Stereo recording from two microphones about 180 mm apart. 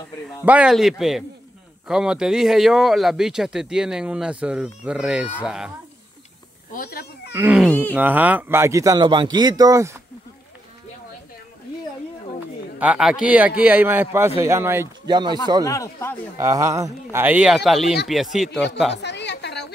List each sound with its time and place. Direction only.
0.5 s speech: 5° right (ahead or behind)
6.7 s speech: 55° left (ahead or behind)
7.3 s a man's voice: 5° right (ahead or behind)
12.7 s a man's voice: 5° right (ahead or behind)
15.0 s speech: 25° right (ahead or behind)
15.6 s speech: 15° left (ahead or behind)
16.3 s a man's voice: 15° right (ahead or behind); by 18.6 s centre (ahead or behind)
19.0 s a sound: 70° left (ahead or behind)